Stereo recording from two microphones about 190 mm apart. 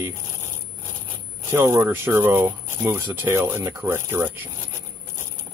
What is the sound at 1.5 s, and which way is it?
Speech, 10° right (ahead or behind).